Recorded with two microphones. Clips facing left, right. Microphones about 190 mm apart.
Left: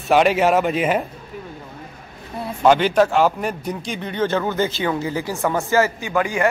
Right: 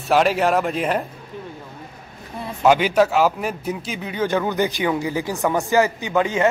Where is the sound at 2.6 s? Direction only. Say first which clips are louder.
Left 1 dB; 10° right (ahead or behind).